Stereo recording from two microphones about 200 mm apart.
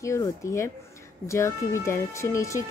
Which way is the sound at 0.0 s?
15° left (ahead or behind).